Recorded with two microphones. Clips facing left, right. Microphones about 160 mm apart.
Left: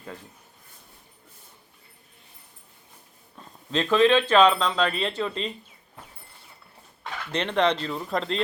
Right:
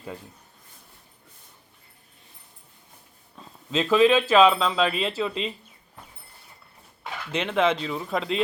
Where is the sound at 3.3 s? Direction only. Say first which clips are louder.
Right 1 dB; 5° right (ahead or behind).